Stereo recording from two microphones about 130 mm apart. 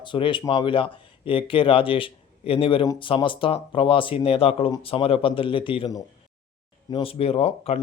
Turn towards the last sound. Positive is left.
turn(degrees=50)  # may be behind; listen again after turning